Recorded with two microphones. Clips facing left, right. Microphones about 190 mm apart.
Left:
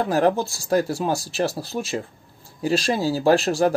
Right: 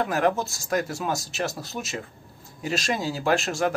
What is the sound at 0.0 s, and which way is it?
A man's voice, 30° left (ahead or behind).